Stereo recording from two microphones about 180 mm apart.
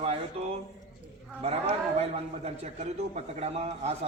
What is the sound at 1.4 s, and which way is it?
A man's voice, 35° right (ahead or behind).